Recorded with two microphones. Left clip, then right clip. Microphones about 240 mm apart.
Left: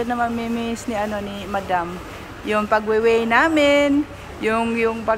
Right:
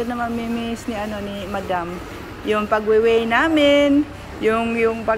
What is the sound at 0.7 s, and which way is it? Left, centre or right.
Speech, centre.